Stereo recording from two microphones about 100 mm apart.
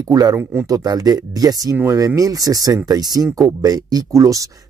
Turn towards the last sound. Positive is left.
turn(degrees=-35)  # may be behind; listen again after turning